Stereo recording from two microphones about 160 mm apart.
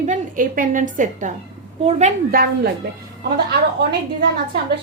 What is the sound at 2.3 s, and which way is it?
Speech, 70° right (ahead or behind).